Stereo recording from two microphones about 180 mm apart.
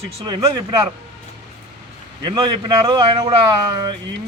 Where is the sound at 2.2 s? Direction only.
25° right (ahead or behind).